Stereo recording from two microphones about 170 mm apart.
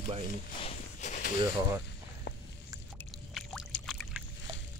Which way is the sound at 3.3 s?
Centre (ahead or behind).